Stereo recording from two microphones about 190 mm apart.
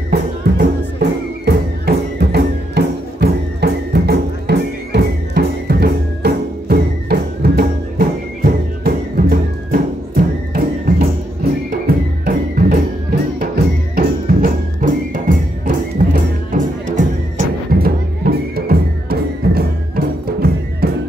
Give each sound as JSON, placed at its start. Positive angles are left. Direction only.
{"t": 0.1, "sound": "music", "side_deg": -60}
{"t": 12.3, "sound": "music", "side_deg": -50}
{"t": 13.9, "sound": "music", "side_deg": -45}